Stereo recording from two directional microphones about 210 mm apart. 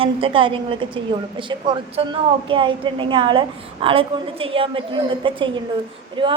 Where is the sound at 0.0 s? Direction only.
25° right (ahead or behind).